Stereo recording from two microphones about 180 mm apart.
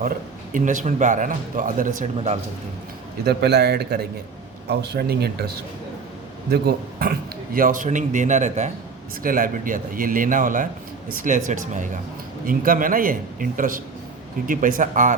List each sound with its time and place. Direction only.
0.5 s speech: 45° right (ahead or behind)
3.2 s a man's voice: 65° right (ahead or behind)
6.5 s a man's voice: 60° right (ahead or behind)
7.5 s speech: 50° right (ahead or behind)